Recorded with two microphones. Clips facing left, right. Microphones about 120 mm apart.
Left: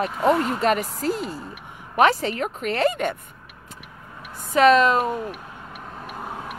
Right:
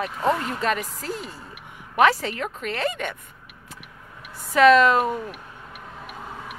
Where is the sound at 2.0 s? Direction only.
25° left (ahead or behind).